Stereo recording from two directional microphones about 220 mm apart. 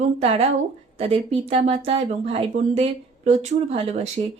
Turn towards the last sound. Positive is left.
turn(degrees=-25)  # may be behind; listen again after turning